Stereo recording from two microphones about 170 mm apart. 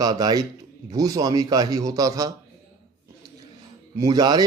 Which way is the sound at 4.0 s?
25° right (ahead or behind).